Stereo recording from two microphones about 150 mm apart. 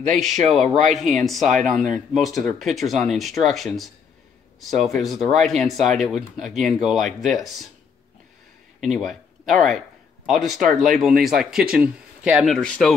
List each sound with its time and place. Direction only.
0.2 s speech: centre (ahead or behind)
1.7 s speech: 55° right (ahead or behind)
2.1 s speech: centre (ahead or behind)
8.8 s speech: centre (ahead or behind)